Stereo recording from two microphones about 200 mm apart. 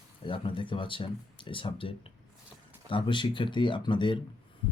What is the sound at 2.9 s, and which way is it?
Speech, 25° left (ahead or behind).